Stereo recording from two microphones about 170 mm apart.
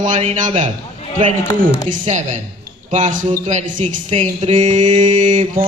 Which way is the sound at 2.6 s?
45° right (ahead or behind).